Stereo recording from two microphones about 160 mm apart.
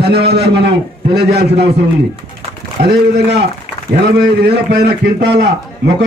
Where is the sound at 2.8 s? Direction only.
90° right.